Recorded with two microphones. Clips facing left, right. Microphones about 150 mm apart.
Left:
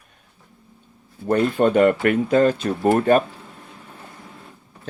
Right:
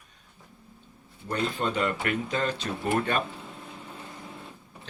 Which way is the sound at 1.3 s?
50° left (ahead or behind).